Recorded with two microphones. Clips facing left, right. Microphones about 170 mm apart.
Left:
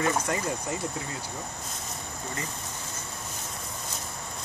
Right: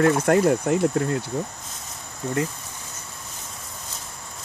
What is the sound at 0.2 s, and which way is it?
Speech, 60° right (ahead or behind).